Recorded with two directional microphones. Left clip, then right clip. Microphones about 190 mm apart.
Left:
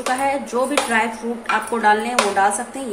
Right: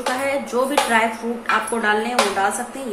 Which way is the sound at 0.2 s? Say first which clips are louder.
Left 1 dB; centre (ahead or behind).